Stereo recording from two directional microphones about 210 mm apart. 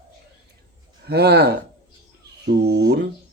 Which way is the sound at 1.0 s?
50° right (ahead or behind).